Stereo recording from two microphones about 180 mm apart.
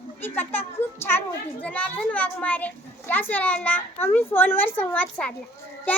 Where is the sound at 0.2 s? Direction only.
10° left (ahead or behind).